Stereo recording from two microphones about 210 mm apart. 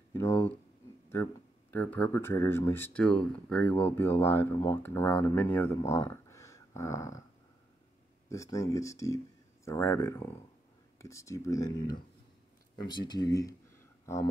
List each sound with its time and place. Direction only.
0.1 s a sound: 10° left (ahead or behind)
1.1 s speech: 10° left (ahead or behind)
8.3 s speech: 15° left (ahead or behind)